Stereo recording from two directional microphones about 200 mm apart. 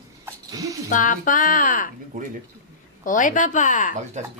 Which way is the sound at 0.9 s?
40° left (ahead or behind).